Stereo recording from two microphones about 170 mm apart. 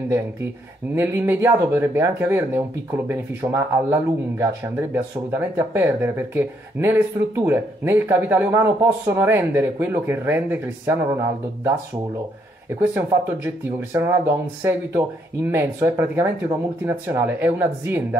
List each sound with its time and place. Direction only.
0.9 s speech: 10° right (ahead or behind)